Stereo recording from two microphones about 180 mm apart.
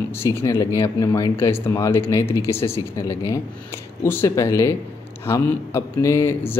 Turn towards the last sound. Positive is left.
turn(degrees=15)  # may be behind; listen again after turning